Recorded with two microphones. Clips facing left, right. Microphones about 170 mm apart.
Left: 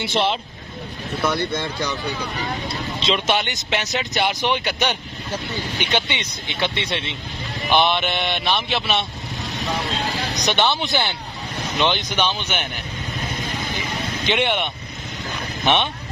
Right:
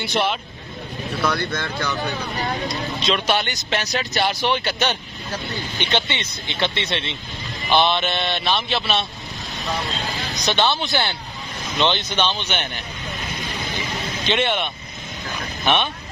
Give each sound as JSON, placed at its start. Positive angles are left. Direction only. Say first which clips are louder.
{"t": 0.0, "sound": "speech", "louder": "left 1 dB", "side_deg": 25}
{"t": 3.0, "sound": "speech", "louder": "left 1 dB", "side_deg": 25}
{"t": 10.3, "sound": "speech", "louder": "right 1 dB", "side_deg": 20}
{"t": 14.2, "sound": "speech", "louder": "even", "side_deg": 15}